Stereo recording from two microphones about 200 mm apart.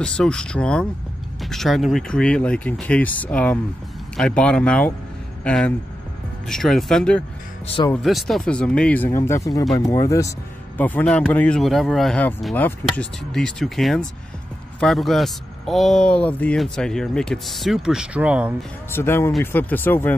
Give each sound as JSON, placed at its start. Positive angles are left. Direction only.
{"t": 0.0, "sound": "speech", "side_deg": 5}
{"t": 7.6, "sound": "speech", "side_deg": 25}
{"t": 7.9, "sound": "speech", "side_deg": 0}
{"t": 18.9, "sound": "speech", "side_deg": 10}